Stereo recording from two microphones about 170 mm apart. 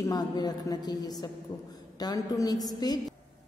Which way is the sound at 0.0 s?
25° left (ahead or behind).